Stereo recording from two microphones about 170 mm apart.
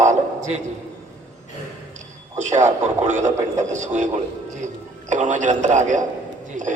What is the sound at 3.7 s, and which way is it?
A man's voice, 45° right (ahead or behind).